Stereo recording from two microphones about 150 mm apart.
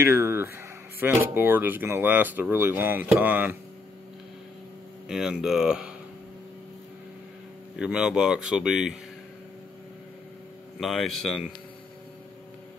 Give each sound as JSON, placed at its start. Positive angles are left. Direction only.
{"t": 0.0, "sound": "speech", "side_deg": -15}
{"t": 5.0, "sound": "speech", "side_deg": -5}
{"t": 7.7, "sound": "speech", "side_deg": -5}
{"t": 10.8, "sound": "speech", "side_deg": 0}